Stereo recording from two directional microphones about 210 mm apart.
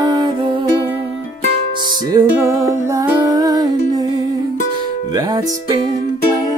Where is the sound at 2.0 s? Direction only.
15° right (ahead or behind).